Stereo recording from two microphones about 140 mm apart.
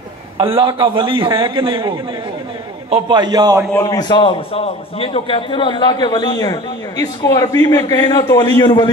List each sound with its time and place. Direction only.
0.4 s a man's voice: 40° right (ahead or behind)
3.7 s a man's voice: 25° left (ahead or behind)